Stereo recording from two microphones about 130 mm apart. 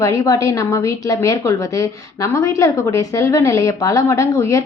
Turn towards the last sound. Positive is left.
turn(degrees=25)  # may be behind; listen again after turning